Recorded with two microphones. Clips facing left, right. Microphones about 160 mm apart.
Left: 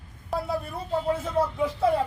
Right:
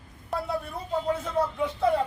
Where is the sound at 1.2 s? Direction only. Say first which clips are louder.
Left 2 dB; centre (ahead or behind).